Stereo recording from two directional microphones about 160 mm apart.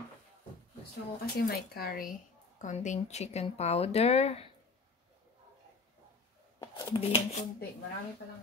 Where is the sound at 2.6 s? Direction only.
50° left (ahead or behind).